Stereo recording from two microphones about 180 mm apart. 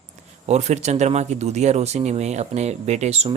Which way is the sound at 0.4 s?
40° right (ahead or behind).